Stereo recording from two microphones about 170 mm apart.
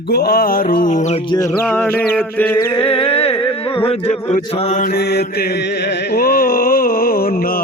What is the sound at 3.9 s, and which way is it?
Mantra, 35° left (ahead or behind).